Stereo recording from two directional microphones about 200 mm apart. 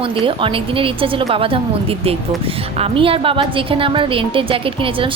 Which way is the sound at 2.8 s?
25° right (ahead or behind).